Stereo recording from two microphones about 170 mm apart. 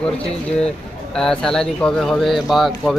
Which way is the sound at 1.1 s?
5° left (ahead or behind).